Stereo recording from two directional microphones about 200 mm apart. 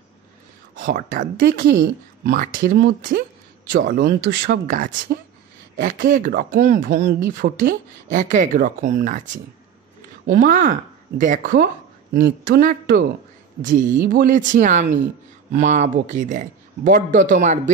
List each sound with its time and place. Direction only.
0.7 s speech: 40° right (ahead or behind)
10.2 s speech: 40° right (ahead or behind)
14.0 s speech: 45° right (ahead or behind)